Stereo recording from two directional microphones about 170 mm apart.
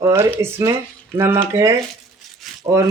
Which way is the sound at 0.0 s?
20° right (ahead or behind).